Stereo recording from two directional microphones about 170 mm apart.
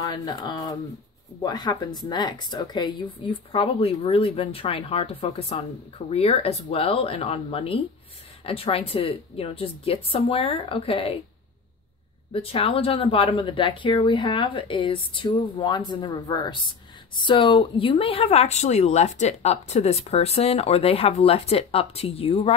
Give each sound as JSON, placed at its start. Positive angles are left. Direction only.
{"t": 0.0, "sound": "speech", "side_deg": 25}
{"t": 12.3, "sound": "speech", "side_deg": 35}